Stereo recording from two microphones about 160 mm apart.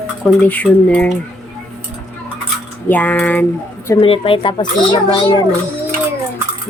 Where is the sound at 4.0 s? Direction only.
35° left (ahead or behind).